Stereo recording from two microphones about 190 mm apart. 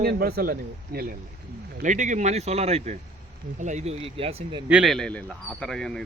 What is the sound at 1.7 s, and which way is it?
Speech, 40° right (ahead or behind).